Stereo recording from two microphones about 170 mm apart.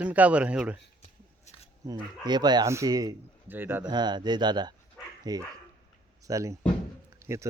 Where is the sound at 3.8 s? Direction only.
25° right (ahead or behind).